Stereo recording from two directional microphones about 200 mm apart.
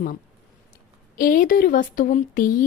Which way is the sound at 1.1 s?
45° left (ahead or behind).